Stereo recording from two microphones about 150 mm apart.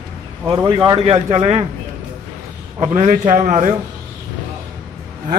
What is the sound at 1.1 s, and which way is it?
Speech, 40° right (ahead or behind).